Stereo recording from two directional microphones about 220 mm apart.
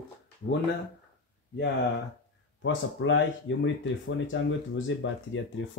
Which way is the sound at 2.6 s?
60° left (ahead or behind).